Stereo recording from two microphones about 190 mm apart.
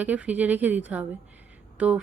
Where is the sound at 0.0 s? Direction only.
10° right (ahead or behind).